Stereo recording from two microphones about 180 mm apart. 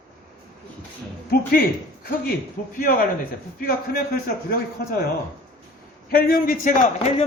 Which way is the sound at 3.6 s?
55° left (ahead or behind).